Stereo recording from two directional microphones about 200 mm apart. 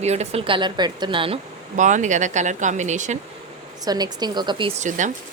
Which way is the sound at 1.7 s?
40° right (ahead or behind).